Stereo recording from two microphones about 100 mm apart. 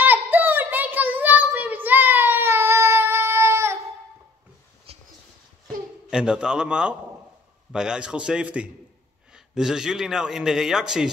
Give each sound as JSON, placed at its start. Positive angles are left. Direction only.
{"t": 0.0, "sound": "child singing", "side_deg": -20}
{"t": 6.0, "sound": "a man's voice", "side_deg": -10}